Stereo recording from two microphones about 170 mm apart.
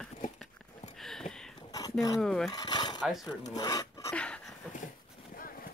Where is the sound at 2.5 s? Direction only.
25° left (ahead or behind).